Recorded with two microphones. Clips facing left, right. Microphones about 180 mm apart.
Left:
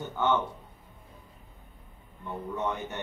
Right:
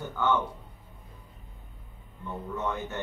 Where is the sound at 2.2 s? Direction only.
15° left (ahead or behind).